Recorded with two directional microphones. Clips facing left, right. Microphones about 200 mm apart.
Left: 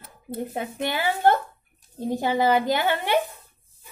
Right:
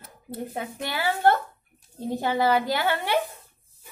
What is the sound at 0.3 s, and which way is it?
A woman's voice, 20° left (ahead or behind).